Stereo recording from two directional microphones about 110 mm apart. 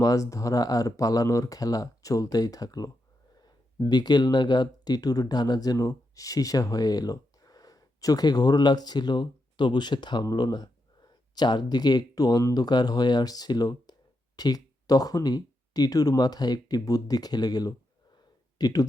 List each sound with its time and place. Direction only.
0.0 s speech: 30° left (ahead or behind)